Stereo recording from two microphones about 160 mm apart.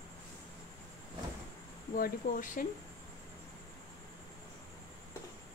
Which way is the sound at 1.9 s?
60° left (ahead or behind).